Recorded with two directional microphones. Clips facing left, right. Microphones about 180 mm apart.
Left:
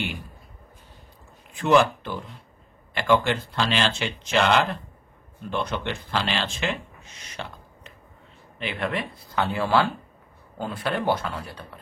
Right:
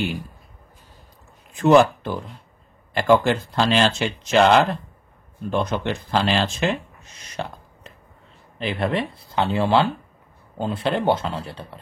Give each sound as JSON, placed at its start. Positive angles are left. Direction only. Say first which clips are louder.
{"t": 1.5, "sound": "speech", "louder": "right 5 dB", "side_deg": -40}